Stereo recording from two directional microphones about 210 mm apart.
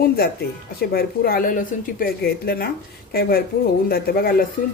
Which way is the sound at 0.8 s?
45° left (ahead or behind).